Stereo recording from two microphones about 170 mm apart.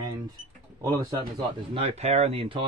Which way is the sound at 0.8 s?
20° right (ahead or behind).